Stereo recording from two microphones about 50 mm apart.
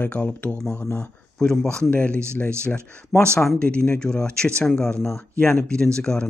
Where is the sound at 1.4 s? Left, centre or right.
Centre.